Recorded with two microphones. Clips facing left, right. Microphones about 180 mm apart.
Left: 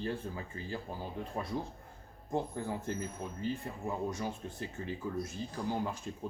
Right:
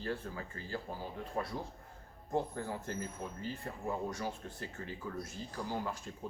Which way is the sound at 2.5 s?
15° left (ahead or behind).